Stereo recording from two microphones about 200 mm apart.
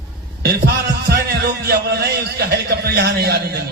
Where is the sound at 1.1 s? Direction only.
55° right (ahead or behind).